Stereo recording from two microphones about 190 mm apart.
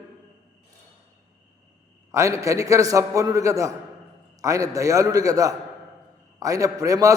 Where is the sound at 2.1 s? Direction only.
15° right (ahead or behind).